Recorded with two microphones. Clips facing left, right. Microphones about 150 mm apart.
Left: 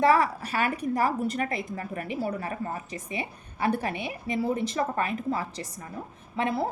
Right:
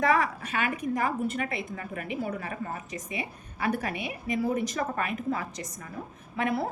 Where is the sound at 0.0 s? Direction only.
35° left (ahead or behind).